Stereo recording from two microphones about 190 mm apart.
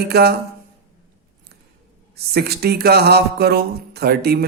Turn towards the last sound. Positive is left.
turn(degrees=-55)  # may be behind; listen again after turning